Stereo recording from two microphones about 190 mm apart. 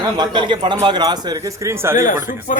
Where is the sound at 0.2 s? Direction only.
25° right (ahead or behind).